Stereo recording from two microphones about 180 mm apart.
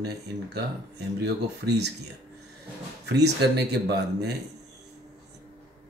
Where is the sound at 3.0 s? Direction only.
65° right (ahead or behind).